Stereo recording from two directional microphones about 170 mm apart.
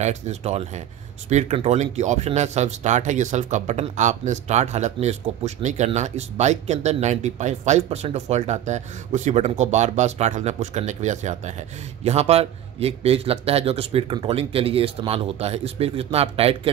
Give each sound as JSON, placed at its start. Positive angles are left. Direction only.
{"t": 0.0, "sound": "a man's voice", "side_deg": -40}